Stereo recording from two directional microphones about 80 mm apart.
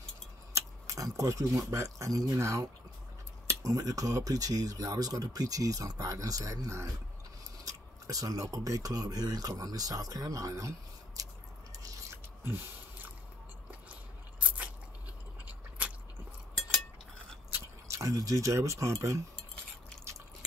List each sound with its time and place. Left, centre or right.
0.5 s speech: right
12.4 s a sound: right
17.8 s speech: right